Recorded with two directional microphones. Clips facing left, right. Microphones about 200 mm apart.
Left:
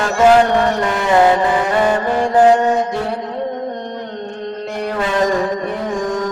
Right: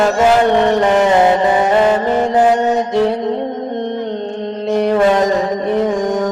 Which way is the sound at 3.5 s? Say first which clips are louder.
Right 4 dB; 20° right (ahead or behind).